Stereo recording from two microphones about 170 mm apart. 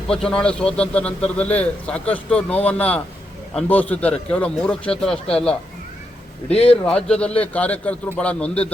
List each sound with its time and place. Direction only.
0.1 s a man's voice: 5° left (ahead or behind)
6.5 s speech: 35° left (ahead or behind)
6.8 s a man's voice: 5° left (ahead or behind)